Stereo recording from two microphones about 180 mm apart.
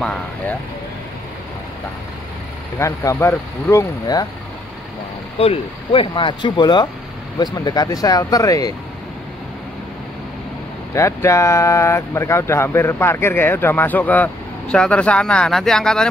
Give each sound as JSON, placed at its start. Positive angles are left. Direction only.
{"t": 0.0, "sound": "speech", "side_deg": 5}
{"t": 2.8, "sound": "speech", "side_deg": 15}
{"t": 5.4, "sound": "speech", "side_deg": 30}
{"t": 11.0, "sound": "speech", "side_deg": 15}